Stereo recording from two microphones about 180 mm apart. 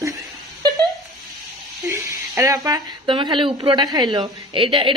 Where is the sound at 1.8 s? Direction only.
15° right (ahead or behind).